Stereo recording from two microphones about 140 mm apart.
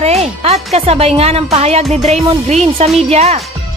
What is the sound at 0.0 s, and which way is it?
Music, 50° right (ahead or behind).